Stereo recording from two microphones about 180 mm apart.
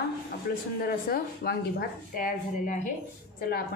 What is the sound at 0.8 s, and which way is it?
A woman's voice, 55° left (ahead or behind).